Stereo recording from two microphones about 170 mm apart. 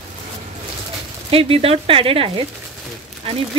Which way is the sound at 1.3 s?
35° right (ahead or behind).